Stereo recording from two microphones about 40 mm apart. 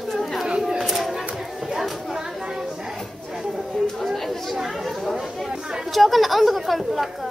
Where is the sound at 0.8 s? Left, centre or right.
Centre.